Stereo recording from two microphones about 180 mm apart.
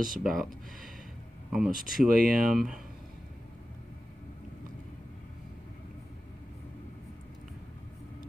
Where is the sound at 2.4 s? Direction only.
Centre (ahead or behind).